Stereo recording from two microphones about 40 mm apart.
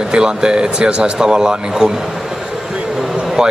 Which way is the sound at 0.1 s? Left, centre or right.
Right.